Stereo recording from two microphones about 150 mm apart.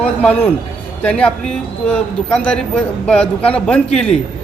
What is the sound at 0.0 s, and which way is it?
A woman's voice, 10° left (ahead or behind).